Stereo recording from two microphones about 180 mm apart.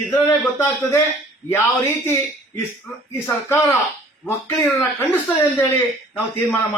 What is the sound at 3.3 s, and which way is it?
Speech, 15° left (ahead or behind).